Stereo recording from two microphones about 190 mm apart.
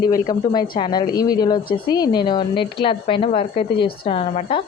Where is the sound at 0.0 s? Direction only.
20° left (ahead or behind).